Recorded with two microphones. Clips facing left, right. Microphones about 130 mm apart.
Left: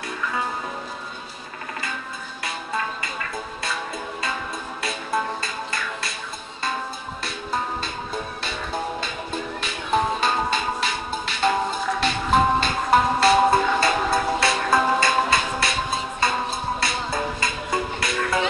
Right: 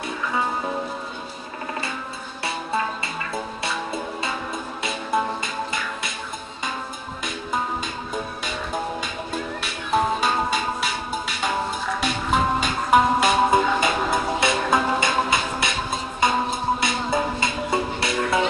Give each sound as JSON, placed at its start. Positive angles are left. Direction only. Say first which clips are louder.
{"t": 4.8, "sound": "music", "louder": "right 2 dB", "side_deg": -20}
{"t": 9.6, "sound": "music", "louder": "even", "side_deg": -10}